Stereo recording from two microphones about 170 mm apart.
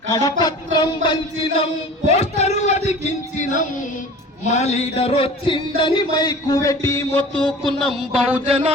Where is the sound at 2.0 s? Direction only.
40° left (ahead or behind).